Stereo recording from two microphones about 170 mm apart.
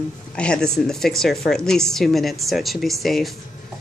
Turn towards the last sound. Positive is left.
turn(degrees=0)  # may be behind; listen again after turning